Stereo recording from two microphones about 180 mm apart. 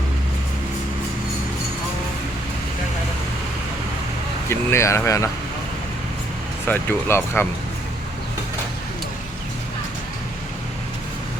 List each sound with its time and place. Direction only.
4.4 s speech: 15° left (ahead or behind)
6.7 s speech: 15° left (ahead or behind)